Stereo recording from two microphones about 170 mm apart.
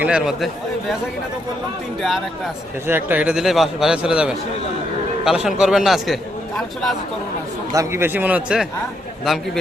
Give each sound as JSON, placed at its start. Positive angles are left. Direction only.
{"t": 0.0, "sound": "a man's voice", "side_deg": -5}
{"t": 2.0, "sound": "a man's voice", "side_deg": 0}
{"t": 2.8, "sound": "a man's voice", "side_deg": -10}
{"t": 7.7, "sound": "a man's voice", "side_deg": -15}